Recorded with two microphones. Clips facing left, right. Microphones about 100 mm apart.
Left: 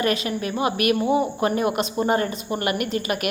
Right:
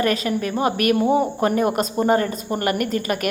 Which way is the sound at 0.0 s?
40° right (ahead or behind).